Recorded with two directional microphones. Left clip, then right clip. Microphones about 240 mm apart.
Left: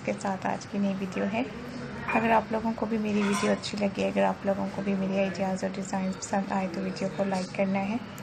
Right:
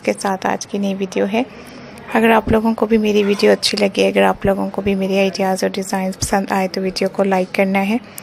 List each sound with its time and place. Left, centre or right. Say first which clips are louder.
0.0 s speech: right 12 dB; right